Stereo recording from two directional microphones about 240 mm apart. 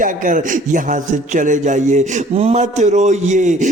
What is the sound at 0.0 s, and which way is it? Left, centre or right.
Speech, right.